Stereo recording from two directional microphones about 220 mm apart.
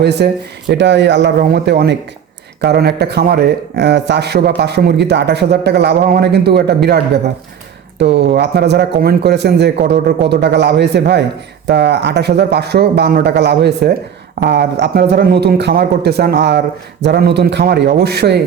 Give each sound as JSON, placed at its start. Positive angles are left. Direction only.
{"t": 0.0, "sound": "speech", "side_deg": -50}